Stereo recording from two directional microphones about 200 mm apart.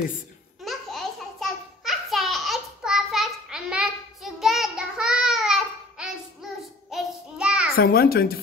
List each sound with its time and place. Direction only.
0.7 s a sound: centre (ahead or behind)
6.9 s child singing: 5° right (ahead or behind)
7.7 s a child's voice: 50° left (ahead or behind)